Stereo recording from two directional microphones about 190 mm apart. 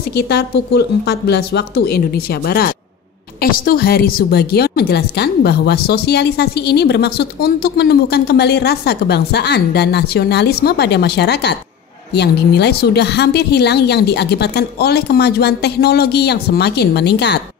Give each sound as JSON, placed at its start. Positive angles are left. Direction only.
{"t": 0.1, "sound": "a woman's voice", "side_deg": 60}